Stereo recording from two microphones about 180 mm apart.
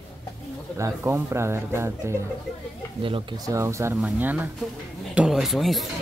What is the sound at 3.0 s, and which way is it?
Speech, 30° right (ahead or behind).